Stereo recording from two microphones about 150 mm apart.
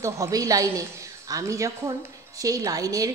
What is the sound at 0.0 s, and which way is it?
A woman's voice, 20° right (ahead or behind).